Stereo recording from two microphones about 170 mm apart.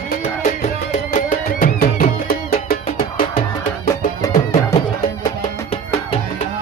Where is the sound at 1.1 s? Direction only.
50° left (ahead or behind).